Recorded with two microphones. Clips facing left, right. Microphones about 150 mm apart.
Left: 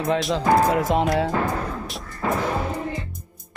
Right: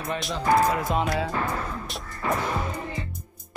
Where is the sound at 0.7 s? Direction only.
65° left (ahead or behind).